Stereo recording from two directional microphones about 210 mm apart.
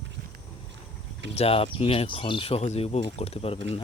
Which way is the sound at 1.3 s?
30° left (ahead or behind).